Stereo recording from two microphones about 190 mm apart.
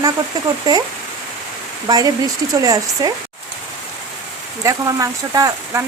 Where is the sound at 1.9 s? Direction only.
20° right (ahead or behind).